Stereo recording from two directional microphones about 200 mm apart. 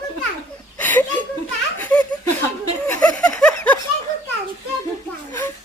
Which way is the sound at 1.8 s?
10° left (ahead or behind).